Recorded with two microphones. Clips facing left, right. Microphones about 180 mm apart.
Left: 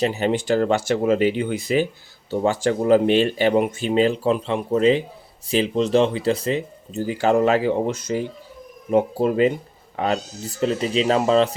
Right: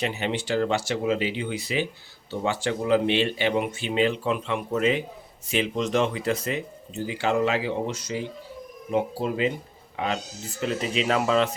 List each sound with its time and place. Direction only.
0.0 s speech: 40° left (ahead or behind)
6.9 s speech: 45° left (ahead or behind)
10.6 s speech: 35° left (ahead or behind)